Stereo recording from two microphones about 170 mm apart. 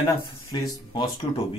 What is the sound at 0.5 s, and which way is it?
Speech, 25° left (ahead or behind).